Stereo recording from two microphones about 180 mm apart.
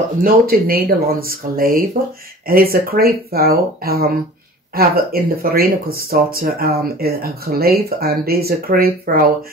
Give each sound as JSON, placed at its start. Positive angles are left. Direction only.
{"t": 0.2, "sound": "speech", "side_deg": -55}